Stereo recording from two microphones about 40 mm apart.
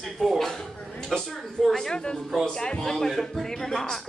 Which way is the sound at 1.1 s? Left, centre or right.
Centre.